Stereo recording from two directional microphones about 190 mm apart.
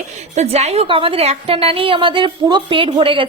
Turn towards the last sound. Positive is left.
turn(degrees=-25)  # may be behind; listen again after turning